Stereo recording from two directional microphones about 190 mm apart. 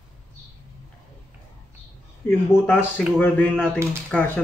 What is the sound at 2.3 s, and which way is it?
A man's voice, 10° left (ahead or behind).